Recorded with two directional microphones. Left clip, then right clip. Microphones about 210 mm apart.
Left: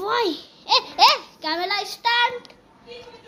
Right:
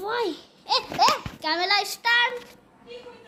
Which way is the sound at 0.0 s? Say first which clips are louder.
Left 5 dB; 15° left (ahead or behind).